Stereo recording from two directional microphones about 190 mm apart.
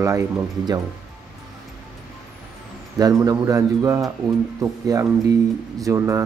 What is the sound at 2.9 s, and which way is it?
Speech, 20° right (ahead or behind).